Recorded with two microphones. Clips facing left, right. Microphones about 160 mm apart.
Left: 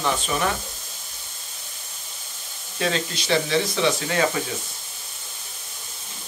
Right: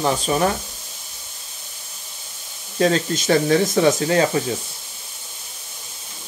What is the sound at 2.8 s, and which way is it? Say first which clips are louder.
Speech: right 7 dB; 45° right (ahead or behind).